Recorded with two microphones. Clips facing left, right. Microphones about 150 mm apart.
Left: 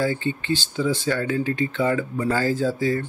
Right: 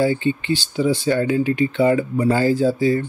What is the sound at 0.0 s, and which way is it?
Speech, 15° right (ahead or behind).